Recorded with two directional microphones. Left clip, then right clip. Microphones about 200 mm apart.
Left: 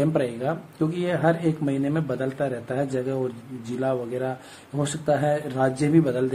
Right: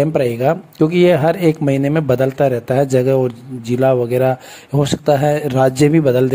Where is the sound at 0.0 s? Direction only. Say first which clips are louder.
Right 9 dB; 40° right (ahead or behind).